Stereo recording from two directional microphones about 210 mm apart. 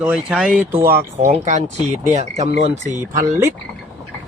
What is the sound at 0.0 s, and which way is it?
Speech, 5° right (ahead or behind).